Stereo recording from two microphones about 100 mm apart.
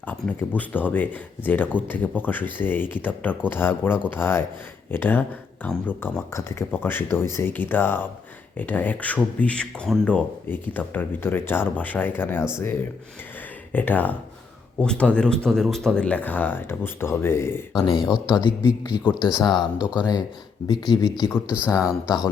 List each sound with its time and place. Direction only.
0.0 s speech: 15° left (ahead or behind)
13.7 s speech: 15° left (ahead or behind)
17.9 s speech: 5° right (ahead or behind)
18.3 s speech: 50° left (ahead or behind)
19.5 s speech: 10° right (ahead or behind)
20.7 s speech: 45° left (ahead or behind)
21.8 s speech: 10° right (ahead or behind)